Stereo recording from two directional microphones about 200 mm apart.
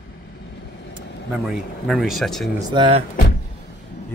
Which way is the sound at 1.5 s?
Centre (ahead or behind).